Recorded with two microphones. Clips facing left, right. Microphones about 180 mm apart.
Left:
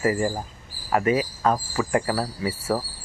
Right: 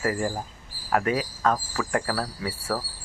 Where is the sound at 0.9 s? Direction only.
5° left (ahead or behind).